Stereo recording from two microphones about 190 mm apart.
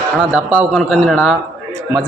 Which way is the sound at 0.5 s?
Centre (ahead or behind).